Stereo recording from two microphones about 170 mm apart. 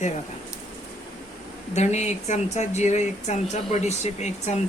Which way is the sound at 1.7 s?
40° left (ahead or behind).